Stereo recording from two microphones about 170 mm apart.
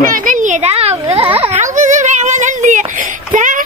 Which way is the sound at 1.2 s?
35° right (ahead or behind).